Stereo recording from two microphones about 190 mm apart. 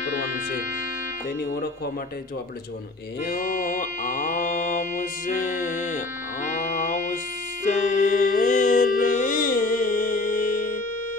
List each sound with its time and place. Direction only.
1.4 s speech: 55° left (ahead or behind)
3.3 s mantra: 45° left (ahead or behind)
7.6 s music: 40° left (ahead or behind)